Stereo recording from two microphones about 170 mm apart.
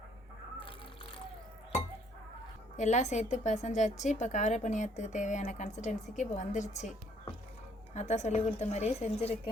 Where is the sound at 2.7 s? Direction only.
45° left (ahead or behind).